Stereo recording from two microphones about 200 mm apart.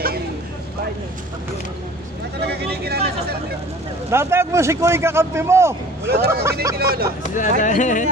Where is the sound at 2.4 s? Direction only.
55° right (ahead or behind).